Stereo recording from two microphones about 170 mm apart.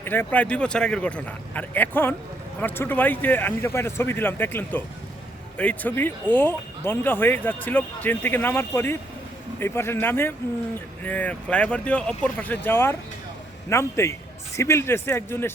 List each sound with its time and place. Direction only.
0.0 s speech: 10° left (ahead or behind)